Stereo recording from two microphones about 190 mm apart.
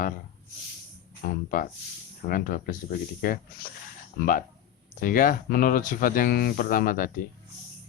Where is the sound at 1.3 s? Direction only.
50° left (ahead or behind).